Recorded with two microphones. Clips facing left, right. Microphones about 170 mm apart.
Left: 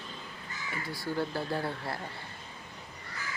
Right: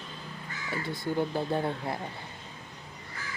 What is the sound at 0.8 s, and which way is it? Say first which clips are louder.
Speech: right 3 dB; 20° right (ahead or behind).